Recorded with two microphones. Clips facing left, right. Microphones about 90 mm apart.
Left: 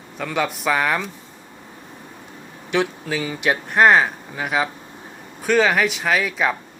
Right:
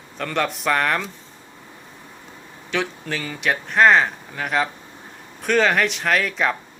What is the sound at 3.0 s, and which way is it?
Speech, 5° left (ahead or behind).